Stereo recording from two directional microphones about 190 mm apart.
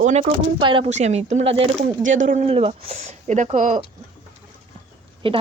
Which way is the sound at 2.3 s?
35° right (ahead or behind).